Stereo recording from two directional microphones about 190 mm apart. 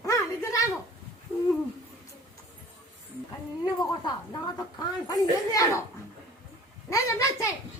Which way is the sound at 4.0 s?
20° left (ahead or behind).